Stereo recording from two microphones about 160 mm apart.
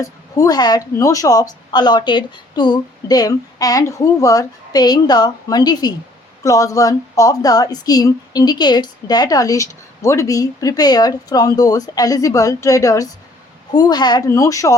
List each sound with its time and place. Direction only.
0.0 s a woman's voice: 20° left (ahead or behind)